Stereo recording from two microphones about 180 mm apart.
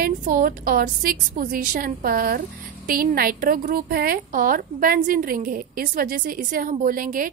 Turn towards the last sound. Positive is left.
turn(degrees=-50)  # may be behind; listen again after turning